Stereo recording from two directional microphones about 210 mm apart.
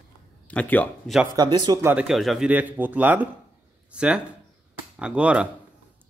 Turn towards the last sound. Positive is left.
turn(degrees=-5)  # may be behind; listen again after turning